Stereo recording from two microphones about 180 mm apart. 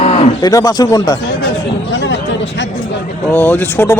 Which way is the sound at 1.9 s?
90° left.